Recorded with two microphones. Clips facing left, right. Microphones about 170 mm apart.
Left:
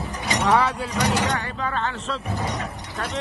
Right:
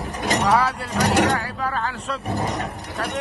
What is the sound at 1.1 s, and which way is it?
Speech, 70° right (ahead or behind).